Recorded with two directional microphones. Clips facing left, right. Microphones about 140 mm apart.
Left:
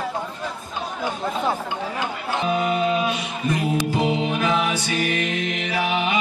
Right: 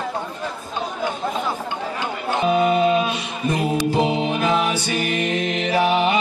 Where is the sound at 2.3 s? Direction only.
25° right (ahead or behind).